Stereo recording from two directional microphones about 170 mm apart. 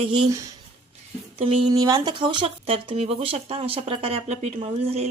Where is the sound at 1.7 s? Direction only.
20° right (ahead or behind).